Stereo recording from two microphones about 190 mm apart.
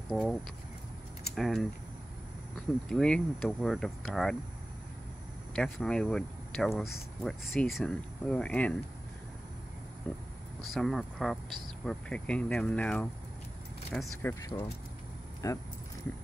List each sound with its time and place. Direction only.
0.1 s speech: centre (ahead or behind)
5.6 s speech: 5° left (ahead or behind)
10.1 s speech: 5° left (ahead or behind)
14.4 s speech: 15° left (ahead or behind)